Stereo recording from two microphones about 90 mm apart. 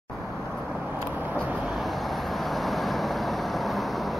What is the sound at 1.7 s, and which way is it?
Vehicle, centre (ahead or behind).